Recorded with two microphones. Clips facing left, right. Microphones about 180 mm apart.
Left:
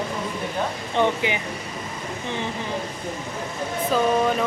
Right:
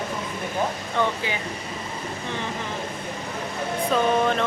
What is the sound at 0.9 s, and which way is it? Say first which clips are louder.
Speech: left 6 dB; 20° left (ahead or behind).